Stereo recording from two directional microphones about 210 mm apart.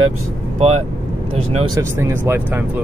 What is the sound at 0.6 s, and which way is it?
Speech, 30° right (ahead or behind).